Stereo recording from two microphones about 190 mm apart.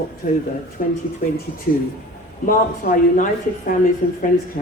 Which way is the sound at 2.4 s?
45° left (ahead or behind).